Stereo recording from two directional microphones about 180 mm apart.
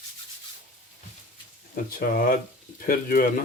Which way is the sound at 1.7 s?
50° left (ahead or behind).